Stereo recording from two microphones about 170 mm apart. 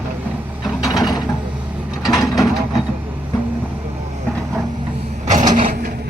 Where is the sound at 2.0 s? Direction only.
20° left (ahead or behind).